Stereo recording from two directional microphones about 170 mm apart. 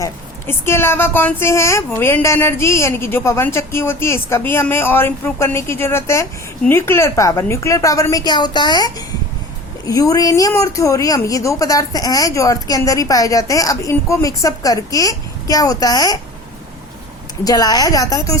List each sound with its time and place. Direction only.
0.0 s speech: 15° left (ahead or behind)
17.4 s speech: 20° left (ahead or behind)